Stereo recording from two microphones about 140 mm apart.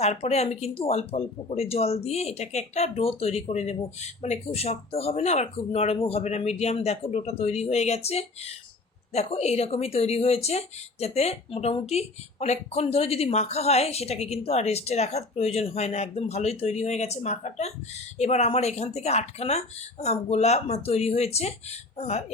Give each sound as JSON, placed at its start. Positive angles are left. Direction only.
{"t": 0.0, "sound": "speech", "side_deg": 50}